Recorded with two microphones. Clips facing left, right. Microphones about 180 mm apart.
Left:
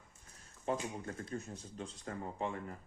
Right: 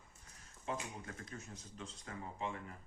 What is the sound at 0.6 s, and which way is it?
Speech, 35° left (ahead or behind).